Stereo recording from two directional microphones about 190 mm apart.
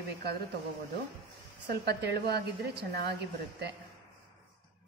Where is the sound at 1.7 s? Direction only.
60° right (ahead or behind).